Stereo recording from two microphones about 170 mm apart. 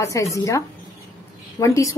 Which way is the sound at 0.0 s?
20° left (ahead or behind).